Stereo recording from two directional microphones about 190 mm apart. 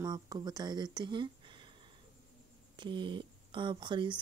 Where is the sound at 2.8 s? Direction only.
25° right (ahead or behind).